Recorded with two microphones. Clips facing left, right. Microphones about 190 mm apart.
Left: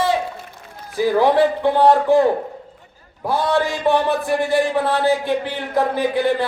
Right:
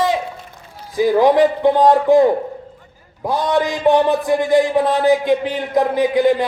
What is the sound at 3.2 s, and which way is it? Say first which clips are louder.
A man's voice: right 1 dB; 15° right (ahead or behind).